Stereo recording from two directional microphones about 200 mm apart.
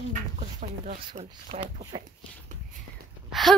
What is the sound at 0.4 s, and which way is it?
Speech, 40° right (ahead or behind).